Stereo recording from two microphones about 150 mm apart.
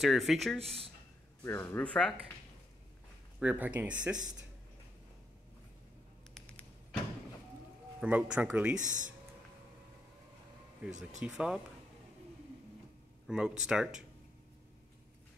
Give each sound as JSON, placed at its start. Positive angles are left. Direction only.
{"t": 0.0, "sound": "speech", "side_deg": 0}
{"t": 1.4, "sound": "speech", "side_deg": 15}
{"t": 3.3, "sound": "speech", "side_deg": -10}
{"t": 6.3, "sound": "a sound", "side_deg": 5}
{"t": 8.0, "sound": "speech", "side_deg": -10}
{"t": 8.7, "sound": "speech", "side_deg": -55}
{"t": 10.8, "sound": "speech", "side_deg": -5}
{"t": 13.3, "sound": "speech", "side_deg": -5}